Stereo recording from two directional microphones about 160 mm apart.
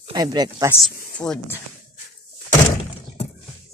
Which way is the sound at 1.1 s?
5° left (ahead or behind).